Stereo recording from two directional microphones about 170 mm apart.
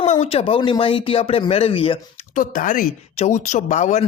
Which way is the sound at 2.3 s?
50° left (ahead or behind).